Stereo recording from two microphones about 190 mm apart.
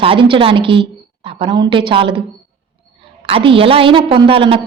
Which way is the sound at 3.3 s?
30° right (ahead or behind).